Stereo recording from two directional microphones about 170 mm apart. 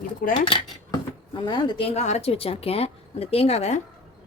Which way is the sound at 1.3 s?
25° left (ahead or behind).